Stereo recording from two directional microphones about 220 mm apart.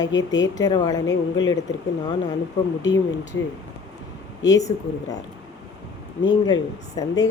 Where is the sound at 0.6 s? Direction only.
15° left (ahead or behind).